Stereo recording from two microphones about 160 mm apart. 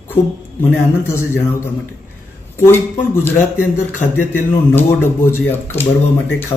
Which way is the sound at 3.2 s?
15° left (ahead or behind).